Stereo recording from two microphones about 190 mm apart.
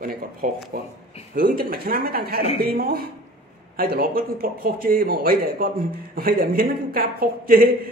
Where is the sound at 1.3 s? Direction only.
50° right (ahead or behind).